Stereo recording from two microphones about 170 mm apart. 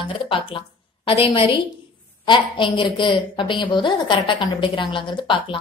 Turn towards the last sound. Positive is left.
turn(degrees=30)  # may be behind; listen again after turning